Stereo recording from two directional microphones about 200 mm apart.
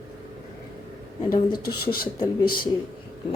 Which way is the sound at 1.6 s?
50° left (ahead or behind).